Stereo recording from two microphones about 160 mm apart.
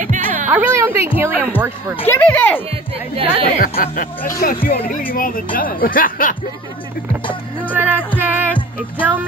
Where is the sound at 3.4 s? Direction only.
65° left (ahead or behind).